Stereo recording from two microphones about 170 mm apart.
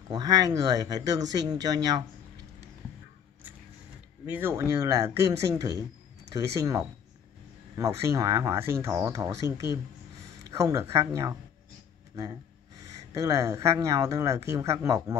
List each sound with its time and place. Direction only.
0.1 s speech: 20° right (ahead or behind)
4.3 s speech: 15° right (ahead or behind)
13.1 s speech: 20° right (ahead or behind)